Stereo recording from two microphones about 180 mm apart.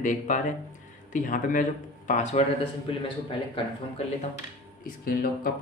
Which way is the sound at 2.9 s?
30° left (ahead or behind).